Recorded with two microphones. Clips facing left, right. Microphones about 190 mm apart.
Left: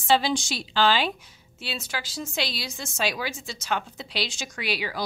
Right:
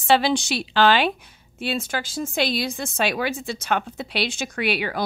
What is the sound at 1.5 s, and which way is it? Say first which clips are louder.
A woman's voice: right 8 dB; 50° right (ahead or behind).